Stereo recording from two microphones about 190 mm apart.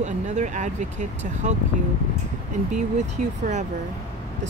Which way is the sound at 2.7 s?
40° right (ahead or behind).